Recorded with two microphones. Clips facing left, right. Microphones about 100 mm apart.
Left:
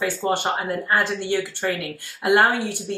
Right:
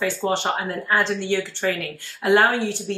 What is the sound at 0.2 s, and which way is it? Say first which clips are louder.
Speech: even; centre (ahead or behind).